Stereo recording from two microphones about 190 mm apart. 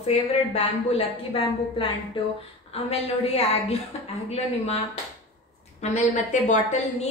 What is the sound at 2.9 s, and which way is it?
Speech, 30° left (ahead or behind).